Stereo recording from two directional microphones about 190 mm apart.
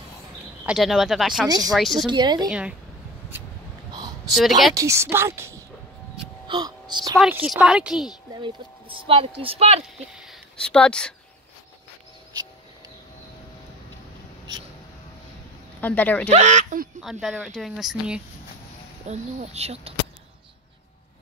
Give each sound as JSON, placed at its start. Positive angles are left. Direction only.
{"t": 0.7, "sound": "speech", "side_deg": 0}
{"t": 2.0, "sound": "speech", "side_deg": -25}
{"t": 4.3, "sound": "speech", "side_deg": 0}
{"t": 4.7, "sound": "a woman's voice", "side_deg": -15}
{"t": 6.4, "sound": "speech", "side_deg": -25}
{"t": 7.2, "sound": "speech", "side_deg": -5}
{"t": 8.3, "sound": "speech", "side_deg": -25}
{"t": 10.1, "sound": "speech", "side_deg": 0}
{"t": 15.8, "sound": "speech", "side_deg": 10}
{"t": 16.3, "sound": "speech", "side_deg": -40}
{"t": 17.0, "sound": "speech", "side_deg": 0}
{"t": 19.0, "sound": "speech", "side_deg": -35}